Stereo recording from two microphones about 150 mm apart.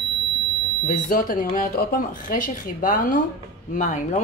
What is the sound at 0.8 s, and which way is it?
Speech, 65° left (ahead or behind).